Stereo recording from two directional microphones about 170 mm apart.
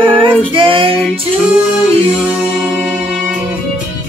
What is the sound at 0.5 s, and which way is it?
Speech, 30° right (ahead or behind).